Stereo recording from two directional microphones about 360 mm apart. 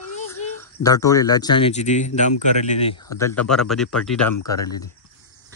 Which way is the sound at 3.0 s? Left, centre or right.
Centre.